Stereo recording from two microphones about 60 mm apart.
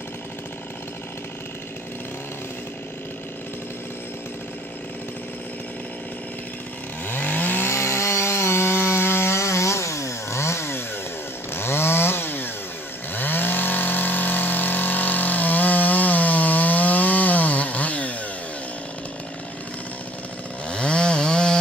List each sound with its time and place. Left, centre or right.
7.1 s chainsaw: left
7.7 s wood: left
11.5 s chainsaw: left
20.6 s chainsaw: centre